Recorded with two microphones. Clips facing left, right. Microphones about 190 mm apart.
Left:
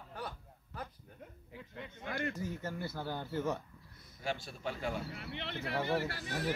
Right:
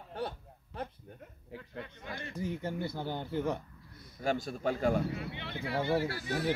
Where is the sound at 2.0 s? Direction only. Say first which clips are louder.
Left 9 dB; 60° left (ahead or behind).